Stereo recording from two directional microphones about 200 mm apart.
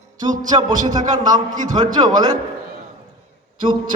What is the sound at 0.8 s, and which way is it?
A man's voice, 40° right (ahead or behind).